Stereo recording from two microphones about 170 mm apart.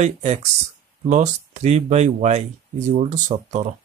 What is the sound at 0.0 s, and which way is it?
Speech, 40° right (ahead or behind).